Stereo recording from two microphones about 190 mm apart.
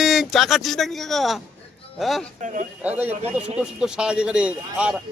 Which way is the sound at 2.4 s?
40° right (ahead or behind).